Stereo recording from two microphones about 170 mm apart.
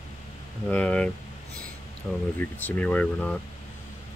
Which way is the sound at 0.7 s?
5° left (ahead or behind).